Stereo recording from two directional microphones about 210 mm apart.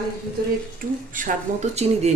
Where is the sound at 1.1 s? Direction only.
35° right (ahead or behind).